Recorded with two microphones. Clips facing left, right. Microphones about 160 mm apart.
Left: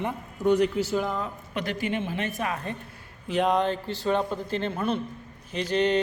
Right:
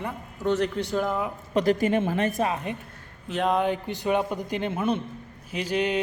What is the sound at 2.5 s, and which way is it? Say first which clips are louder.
Speech: right 2 dB; 15° right (ahead or behind).